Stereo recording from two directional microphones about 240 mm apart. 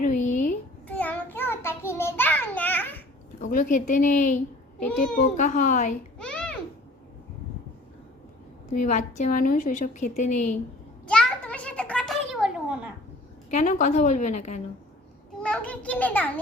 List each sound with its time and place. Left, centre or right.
0.0 s a sound: left
0.9 s child singing: centre
3.4 s a woman's voice: left
5.4 s a woman's voice: left
6.1 s babbling: centre
8.7 s a woman's voice: left
11.0 s a sound: centre
13.5 s a woman's voice: left
15.4 s a child's voice: centre